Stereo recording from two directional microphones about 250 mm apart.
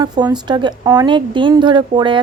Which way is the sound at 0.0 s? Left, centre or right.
Centre.